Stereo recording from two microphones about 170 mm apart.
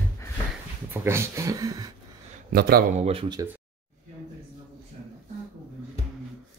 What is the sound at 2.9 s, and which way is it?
Speech, 35° right (ahead or behind).